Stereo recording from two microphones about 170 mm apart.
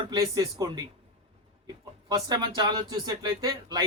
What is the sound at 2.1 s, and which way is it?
A man's voice, 25° right (ahead or behind).